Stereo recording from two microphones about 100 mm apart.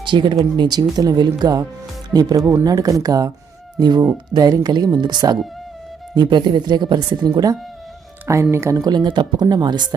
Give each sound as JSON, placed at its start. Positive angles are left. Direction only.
{"t": 0.0, "sound": "speech", "side_deg": -55}
{"t": 8.3, "sound": "speech", "side_deg": -30}